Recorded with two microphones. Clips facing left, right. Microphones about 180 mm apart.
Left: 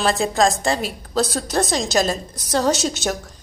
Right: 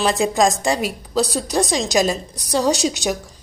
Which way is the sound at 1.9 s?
15° right (ahead or behind).